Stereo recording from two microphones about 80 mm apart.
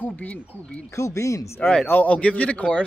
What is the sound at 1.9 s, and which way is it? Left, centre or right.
Speech, centre.